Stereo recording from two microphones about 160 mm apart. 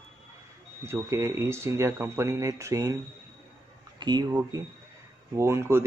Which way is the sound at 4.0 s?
25° right (ahead or behind).